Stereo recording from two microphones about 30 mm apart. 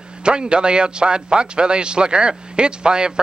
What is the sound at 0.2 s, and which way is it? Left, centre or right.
A man's voice, right.